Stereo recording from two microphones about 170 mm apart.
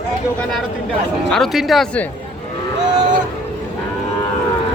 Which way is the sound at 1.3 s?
Centre (ahead or behind).